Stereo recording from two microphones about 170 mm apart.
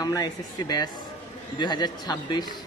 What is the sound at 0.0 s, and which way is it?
Speech, 20° left (ahead or behind).